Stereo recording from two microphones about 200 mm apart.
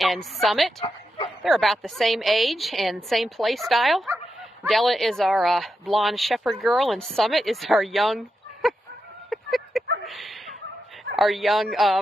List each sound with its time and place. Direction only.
0.0 s speech: centre (ahead or behind)
0.8 s bow-wow: 25° left (ahead or behind)
1.4 s speech: centre (ahead or behind)
8.6 s fowl: centre (ahead or behind)
9.3 s a sound: centre (ahead or behind)
10.0 s speech: centre (ahead or behind)